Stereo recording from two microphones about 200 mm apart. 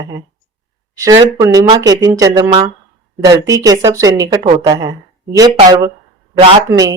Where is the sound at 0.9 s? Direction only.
15° right (ahead or behind).